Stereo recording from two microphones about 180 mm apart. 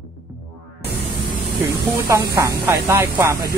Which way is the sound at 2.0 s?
15° right (ahead or behind).